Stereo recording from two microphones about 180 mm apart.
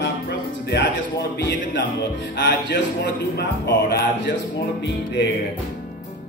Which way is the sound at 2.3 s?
70° left (ahead or behind).